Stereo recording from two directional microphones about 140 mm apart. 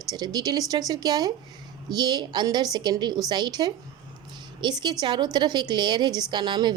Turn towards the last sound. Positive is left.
turn(degrees=-35)  # may be behind; listen again after turning